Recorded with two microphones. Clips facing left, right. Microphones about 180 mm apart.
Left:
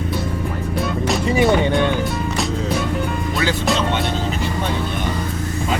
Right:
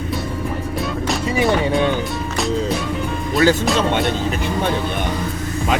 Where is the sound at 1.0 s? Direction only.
Centre (ahead or behind).